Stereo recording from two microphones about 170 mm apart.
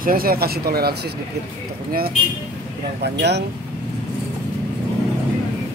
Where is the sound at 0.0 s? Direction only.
60° right (ahead or behind).